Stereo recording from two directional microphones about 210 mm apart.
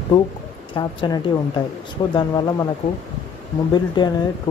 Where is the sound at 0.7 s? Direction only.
20° left (ahead or behind).